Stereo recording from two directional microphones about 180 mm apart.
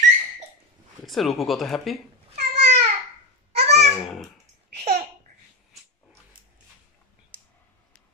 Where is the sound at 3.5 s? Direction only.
35° right (ahead or behind).